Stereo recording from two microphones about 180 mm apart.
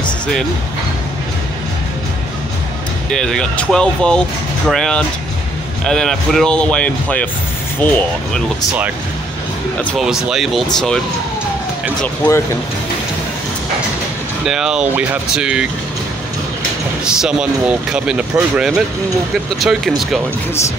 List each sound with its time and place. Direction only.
3.1 s speech: 5° left (ahead or behind)
9.8 s speech: centre (ahead or behind)
12.0 s speech: 10° left (ahead or behind)
14.4 s speech: 5° right (ahead or behind)
17.0 s speech: 5° right (ahead or behind)